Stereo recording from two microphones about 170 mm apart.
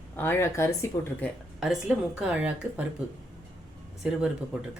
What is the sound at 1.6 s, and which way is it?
A woman's voice, 5° right (ahead or behind).